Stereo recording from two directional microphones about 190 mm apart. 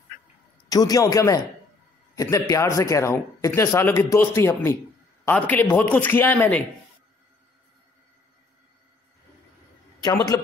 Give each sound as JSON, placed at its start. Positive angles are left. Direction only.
{"t": 0.7, "sound": "a man's voice", "side_deg": 20}